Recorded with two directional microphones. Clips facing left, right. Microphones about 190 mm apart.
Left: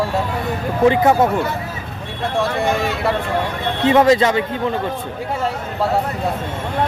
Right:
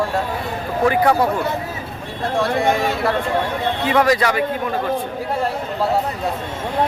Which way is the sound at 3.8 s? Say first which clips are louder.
Left 5 dB; 25° left (ahead or behind).